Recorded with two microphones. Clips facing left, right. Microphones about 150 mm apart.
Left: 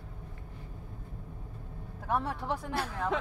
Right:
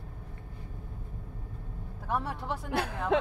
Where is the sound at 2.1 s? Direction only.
5° right (ahead or behind).